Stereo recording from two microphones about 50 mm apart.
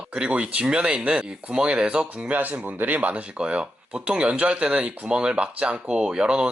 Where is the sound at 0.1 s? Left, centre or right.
Right.